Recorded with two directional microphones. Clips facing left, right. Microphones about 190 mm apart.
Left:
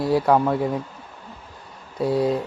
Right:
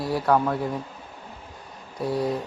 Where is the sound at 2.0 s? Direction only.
25° left (ahead or behind).